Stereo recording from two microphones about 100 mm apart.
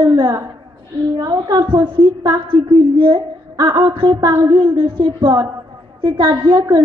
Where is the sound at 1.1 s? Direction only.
40° right (ahead or behind).